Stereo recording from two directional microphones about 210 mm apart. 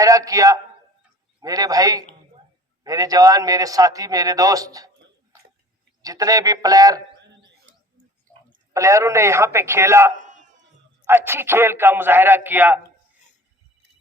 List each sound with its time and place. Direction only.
0.0 s a man's voice: 15° right (ahead or behind)
6.0 s a man's voice: 15° right (ahead or behind)
8.7 s a man's voice: 15° right (ahead or behind)